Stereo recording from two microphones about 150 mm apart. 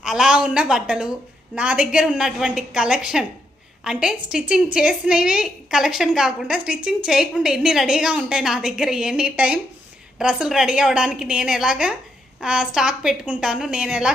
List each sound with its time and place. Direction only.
0.0 s a woman's voice: 5° right (ahead or behind)